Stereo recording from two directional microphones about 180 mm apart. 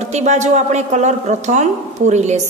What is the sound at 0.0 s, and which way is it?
A woman's voice, 40° right (ahead or behind).